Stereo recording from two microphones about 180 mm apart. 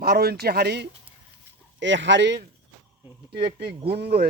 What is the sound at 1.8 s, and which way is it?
Speech, 90° right.